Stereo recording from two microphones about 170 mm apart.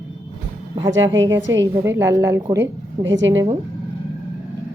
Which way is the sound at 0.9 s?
90° right.